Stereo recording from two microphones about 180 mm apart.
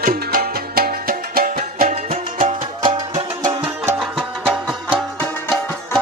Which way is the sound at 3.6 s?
15° right (ahead or behind).